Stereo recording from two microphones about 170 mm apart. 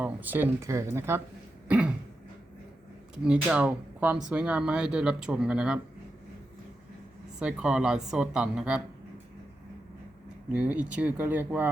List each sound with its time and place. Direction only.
0.0 s speech: 10° right (ahead or behind)
1.6 s throat clearing: 5° right (ahead or behind)
3.2 s speech: 5° right (ahead or behind)
7.3 s speech: 5° right (ahead or behind)
10.5 s speech: 10° right (ahead or behind)